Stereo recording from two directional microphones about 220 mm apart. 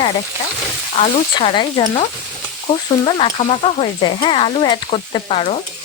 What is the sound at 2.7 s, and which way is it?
Speech, 30° left (ahead or behind).